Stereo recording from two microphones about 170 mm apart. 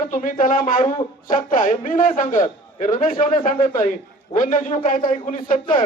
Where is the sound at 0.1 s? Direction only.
55° left (ahead or behind).